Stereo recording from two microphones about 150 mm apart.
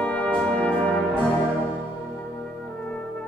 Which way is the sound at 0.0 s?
10° left (ahead or behind).